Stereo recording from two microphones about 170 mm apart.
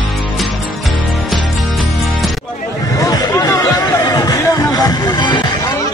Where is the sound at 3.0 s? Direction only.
20° left (ahead or behind).